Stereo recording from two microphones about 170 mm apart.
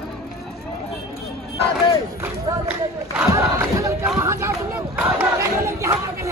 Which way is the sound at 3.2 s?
15° right (ahead or behind).